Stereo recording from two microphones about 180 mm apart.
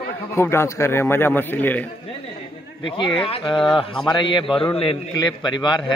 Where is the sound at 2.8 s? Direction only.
25° left (ahead or behind).